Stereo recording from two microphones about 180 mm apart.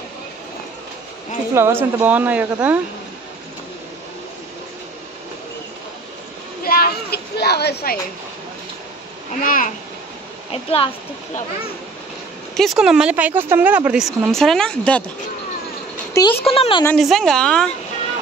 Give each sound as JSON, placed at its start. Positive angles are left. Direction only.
{"t": 1.5, "sound": "speech", "side_deg": -15}
{"t": 6.6, "sound": "speech", "side_deg": 55}
{"t": 9.4, "sound": "a child's voice", "side_deg": 50}
{"t": 10.5, "sound": "speech", "side_deg": 30}
{"t": 12.5, "sound": "speech", "side_deg": 0}
{"t": 16.1, "sound": "a sound", "side_deg": 20}
{"t": 16.4, "sound": "speech", "side_deg": 30}
{"t": 16.8, "sound": "speech", "side_deg": 0}